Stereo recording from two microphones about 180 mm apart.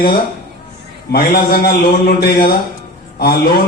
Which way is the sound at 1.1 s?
60° left (ahead or behind).